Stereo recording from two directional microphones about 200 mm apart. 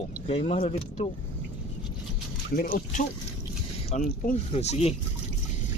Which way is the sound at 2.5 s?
50° left (ahead or behind).